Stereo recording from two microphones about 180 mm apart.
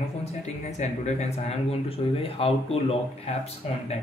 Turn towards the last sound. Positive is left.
turn(degrees=35)  # may be behind; listen again after turning